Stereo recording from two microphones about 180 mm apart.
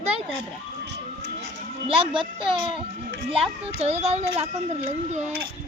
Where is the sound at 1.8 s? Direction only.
30° right (ahead or behind).